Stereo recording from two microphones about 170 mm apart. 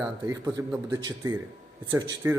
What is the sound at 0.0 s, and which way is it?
Speech, 20° right (ahead or behind).